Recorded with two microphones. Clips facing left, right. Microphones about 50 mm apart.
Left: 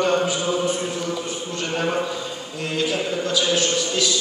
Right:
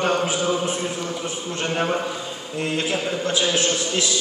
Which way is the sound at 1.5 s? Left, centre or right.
Right.